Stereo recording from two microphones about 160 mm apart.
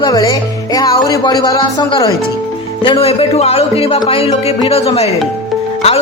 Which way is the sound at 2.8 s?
35° left (ahead or behind).